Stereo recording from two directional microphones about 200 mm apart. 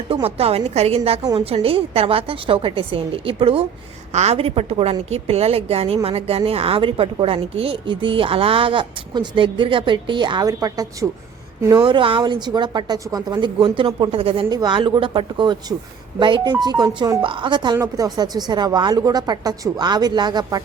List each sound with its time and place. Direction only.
0.1 s a woman's voice: 30° right (ahead or behind)